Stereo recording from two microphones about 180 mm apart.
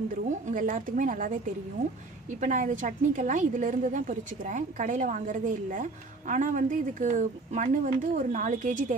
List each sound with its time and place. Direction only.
0.5 s a woman's voice: 45° right (ahead or behind)
2.4 s a woman's voice: 45° right (ahead or behind)